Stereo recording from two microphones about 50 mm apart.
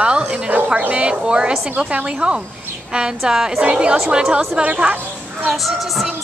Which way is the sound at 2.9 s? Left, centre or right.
Centre.